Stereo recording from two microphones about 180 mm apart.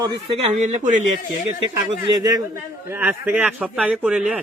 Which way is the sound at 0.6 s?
40° right (ahead or behind).